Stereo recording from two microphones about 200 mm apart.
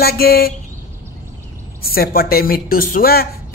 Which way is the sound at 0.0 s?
50° left (ahead or behind).